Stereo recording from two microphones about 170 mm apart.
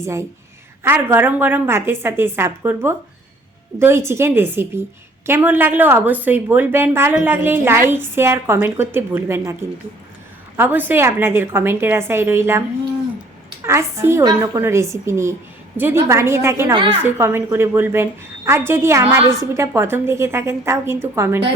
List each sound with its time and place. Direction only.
0.0 s a woman's voice: 15° right (ahead or behind)
10.6 s a woman's voice: 10° right (ahead or behind)
13.7 s a woman's voice: 15° right (ahead or behind)
16.7 s a woman's voice: 30° right (ahead or behind)
17.0 s a woman's voice: 15° right (ahead or behind)